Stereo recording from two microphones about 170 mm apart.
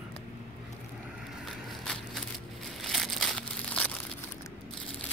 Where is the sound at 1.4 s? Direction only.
5° left (ahead or behind).